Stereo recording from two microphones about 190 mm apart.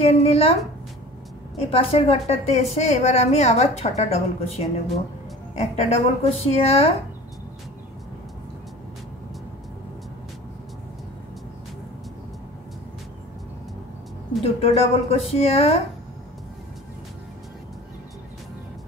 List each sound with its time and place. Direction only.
0.0 s a woman's voice: 30° left (ahead or behind)
1.7 s a woman's voice: 30° left (ahead or behind)
14.4 s a woman's voice: 30° left (ahead or behind)